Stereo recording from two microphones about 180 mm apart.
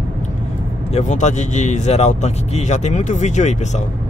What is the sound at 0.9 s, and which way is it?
Speech, 40° left (ahead or behind).